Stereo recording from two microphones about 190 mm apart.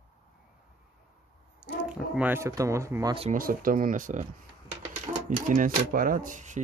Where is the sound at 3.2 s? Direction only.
40° right (ahead or behind).